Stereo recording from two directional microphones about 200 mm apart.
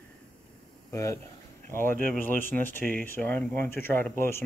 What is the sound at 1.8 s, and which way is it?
Speech, 45° right (ahead or behind).